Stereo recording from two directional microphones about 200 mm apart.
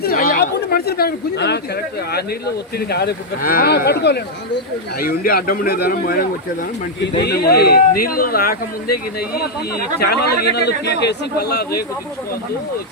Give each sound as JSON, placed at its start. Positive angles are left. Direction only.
{"t": 0.0, "sound": "speech", "side_deg": 50}